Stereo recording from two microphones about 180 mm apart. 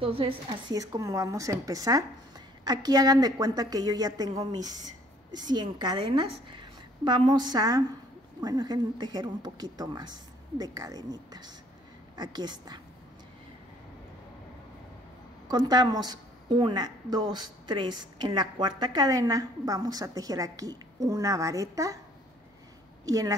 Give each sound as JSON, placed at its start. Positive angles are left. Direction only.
{"t": 0.0, "sound": "a woman's voice", "side_deg": -30}
{"t": 15.4, "sound": "a woman's voice", "side_deg": -20}
{"t": 23.0, "sound": "speech", "side_deg": -20}